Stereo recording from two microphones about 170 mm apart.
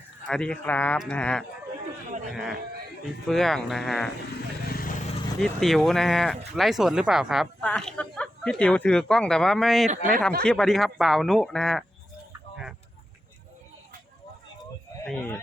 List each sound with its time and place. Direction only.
0.3 s speech: 5° left (ahead or behind)
4.7 s vehicle: 55° left (ahead or behind)
5.4 s speech: centre (ahead or behind)